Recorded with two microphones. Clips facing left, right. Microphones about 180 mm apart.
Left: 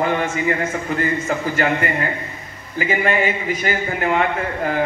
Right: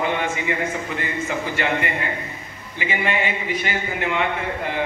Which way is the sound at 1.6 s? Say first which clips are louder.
Left 4 dB; 40° left (ahead or behind).